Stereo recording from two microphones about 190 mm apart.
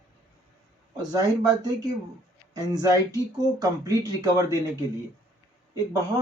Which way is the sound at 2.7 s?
20° right (ahead or behind).